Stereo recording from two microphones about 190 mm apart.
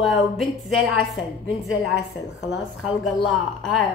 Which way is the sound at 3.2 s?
Centre (ahead or behind).